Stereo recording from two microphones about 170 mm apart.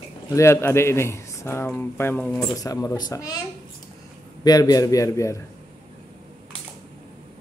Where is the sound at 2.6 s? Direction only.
20° left (ahead or behind).